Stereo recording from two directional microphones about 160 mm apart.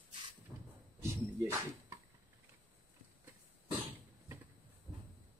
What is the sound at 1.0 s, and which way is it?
Music, 15° right (ahead or behind).